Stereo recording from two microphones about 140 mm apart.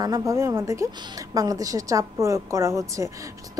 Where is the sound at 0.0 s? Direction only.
25° right (ahead or behind).